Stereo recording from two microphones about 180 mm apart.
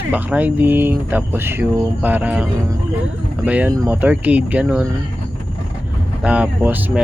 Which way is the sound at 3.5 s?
10° right (ahead or behind).